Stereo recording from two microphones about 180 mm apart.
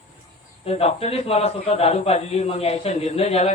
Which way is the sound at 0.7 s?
35° left (ahead or behind).